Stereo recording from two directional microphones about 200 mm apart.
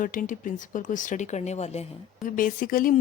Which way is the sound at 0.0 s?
40° left (ahead or behind).